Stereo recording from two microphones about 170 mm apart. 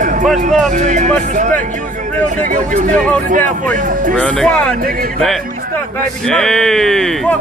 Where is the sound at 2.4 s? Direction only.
50° right (ahead or behind).